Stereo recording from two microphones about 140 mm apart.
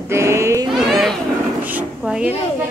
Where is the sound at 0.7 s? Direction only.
Centre (ahead or behind).